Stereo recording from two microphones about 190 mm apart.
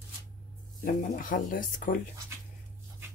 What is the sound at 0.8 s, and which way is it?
Speech, 45° left (ahead or behind).